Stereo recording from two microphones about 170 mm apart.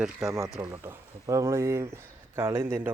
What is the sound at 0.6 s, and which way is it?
Speech, 15° right (ahead or behind).